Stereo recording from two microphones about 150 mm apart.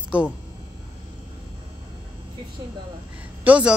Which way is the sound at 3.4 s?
10° right (ahead or behind).